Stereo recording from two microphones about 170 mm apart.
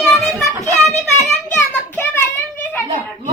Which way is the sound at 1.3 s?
10° left (ahead or behind).